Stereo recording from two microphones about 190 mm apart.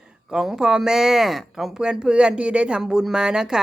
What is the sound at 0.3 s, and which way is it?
A woman's voice, 5° right (ahead or behind).